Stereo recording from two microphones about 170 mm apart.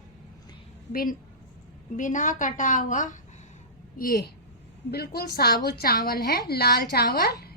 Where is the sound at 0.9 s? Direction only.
55° left (ahead or behind).